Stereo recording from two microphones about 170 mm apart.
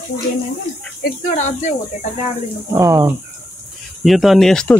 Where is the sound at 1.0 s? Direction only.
45° left (ahead or behind).